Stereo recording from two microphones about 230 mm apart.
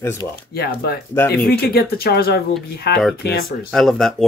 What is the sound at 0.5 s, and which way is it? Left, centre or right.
Speech, left.